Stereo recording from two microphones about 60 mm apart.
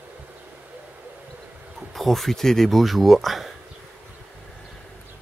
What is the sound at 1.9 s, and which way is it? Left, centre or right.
Speech, centre.